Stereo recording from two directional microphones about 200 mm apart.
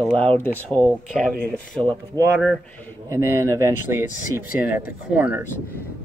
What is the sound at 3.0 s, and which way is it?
Speech, 15° right (ahead or behind).